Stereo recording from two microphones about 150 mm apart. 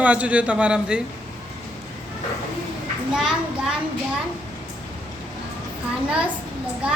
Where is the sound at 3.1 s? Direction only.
5° right (ahead or behind).